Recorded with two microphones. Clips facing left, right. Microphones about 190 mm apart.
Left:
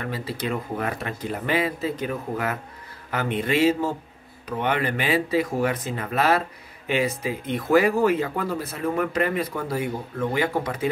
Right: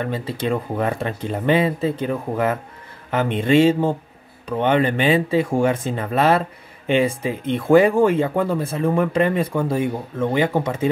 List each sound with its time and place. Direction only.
0.0 s speech: 25° right (ahead or behind)